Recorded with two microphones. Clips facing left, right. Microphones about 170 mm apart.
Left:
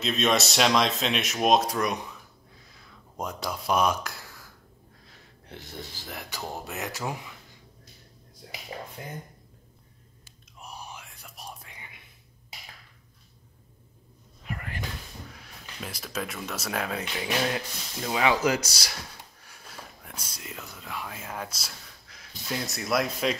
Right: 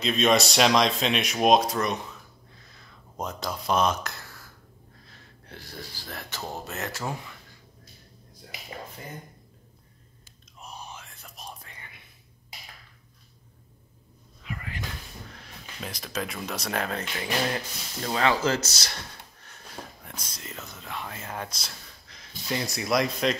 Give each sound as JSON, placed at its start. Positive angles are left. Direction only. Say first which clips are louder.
{"t": 0.0, "sound": "speech", "louder": "right 3 dB", "side_deg": 0}
{"t": 2.6, "sound": "a sound", "louder": "even", "side_deg": 10}
{"t": 5.0, "sound": "speech", "louder": "left 1 dB", "side_deg": 15}
{"t": 10.6, "sound": "whispering", "louder": "even", "side_deg": 10}
{"t": 14.4, "sound": "a sound", "louder": "left 1 dB", "side_deg": 45}
{"t": 15.8, "sound": "speech", "louder": "right 1 dB", "side_deg": 5}